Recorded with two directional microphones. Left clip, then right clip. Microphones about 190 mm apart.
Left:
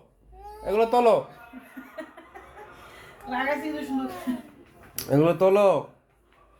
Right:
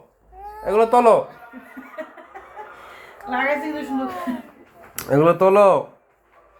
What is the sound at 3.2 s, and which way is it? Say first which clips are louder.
Speech: right 6 dB; 20° left (ahead or behind).